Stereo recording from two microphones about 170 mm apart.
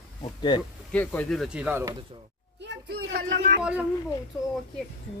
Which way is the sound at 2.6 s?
80° right.